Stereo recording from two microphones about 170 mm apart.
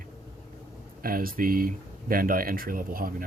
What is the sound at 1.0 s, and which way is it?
Speech, 60° right (ahead or behind).